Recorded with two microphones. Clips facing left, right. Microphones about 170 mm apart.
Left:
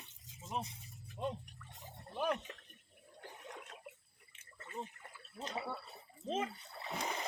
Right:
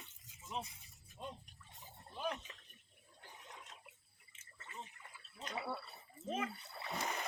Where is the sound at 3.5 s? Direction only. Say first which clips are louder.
Left 7 dB; 55° left (ahead or behind).